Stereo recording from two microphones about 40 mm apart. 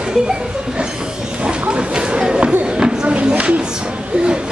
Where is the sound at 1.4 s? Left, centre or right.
Right.